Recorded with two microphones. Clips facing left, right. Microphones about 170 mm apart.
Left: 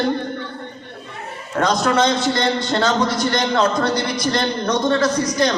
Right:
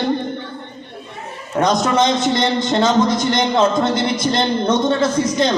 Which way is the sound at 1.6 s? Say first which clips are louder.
Right 1 dB; 20° right (ahead or behind).